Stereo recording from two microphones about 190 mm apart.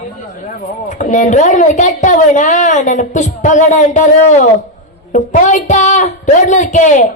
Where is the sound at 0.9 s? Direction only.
40° left (ahead or behind).